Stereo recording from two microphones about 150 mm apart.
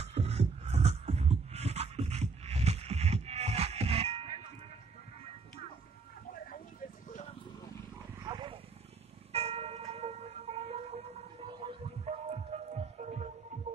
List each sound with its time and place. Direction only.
0.0 s music: 45° right (ahead or behind)
6.3 s a sound: 70° left (ahead or behind)
8.3 s wild animals: 30° right (ahead or behind)
9.3 s church bell: 40° right (ahead or behind)
11.4 s throbbing: 40° right (ahead or behind)